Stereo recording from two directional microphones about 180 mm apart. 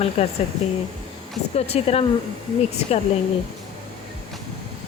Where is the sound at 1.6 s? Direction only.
35° left (ahead or behind).